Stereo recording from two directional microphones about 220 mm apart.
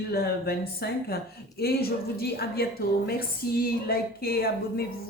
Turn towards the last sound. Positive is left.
turn(degrees=45)  # may be behind; listen again after turning